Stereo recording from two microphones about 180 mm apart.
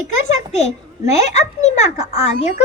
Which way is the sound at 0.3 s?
40° left (ahead or behind).